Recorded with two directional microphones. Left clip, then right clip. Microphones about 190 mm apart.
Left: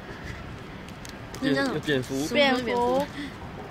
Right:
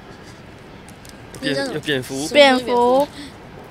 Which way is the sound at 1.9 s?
15° right (ahead or behind).